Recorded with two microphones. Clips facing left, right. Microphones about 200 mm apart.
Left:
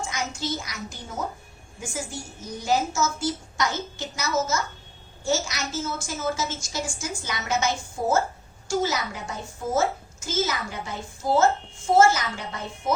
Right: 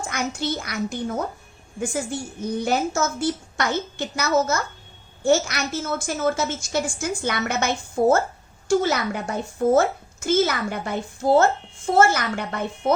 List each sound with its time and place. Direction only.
0.1 s a woman's voice: 60° right (ahead or behind)